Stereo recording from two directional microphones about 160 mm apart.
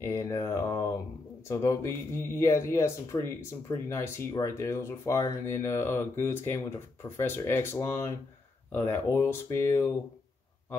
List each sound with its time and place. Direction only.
0.0 s speech: 15° left (ahead or behind)